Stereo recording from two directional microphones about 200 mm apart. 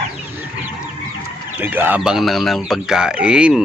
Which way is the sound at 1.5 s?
10° right (ahead or behind).